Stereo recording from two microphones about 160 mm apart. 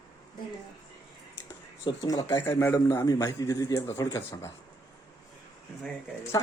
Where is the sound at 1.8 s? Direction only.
25° left (ahead or behind).